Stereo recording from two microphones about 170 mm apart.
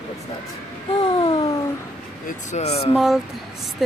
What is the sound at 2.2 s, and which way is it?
Speech, 40° left (ahead or behind).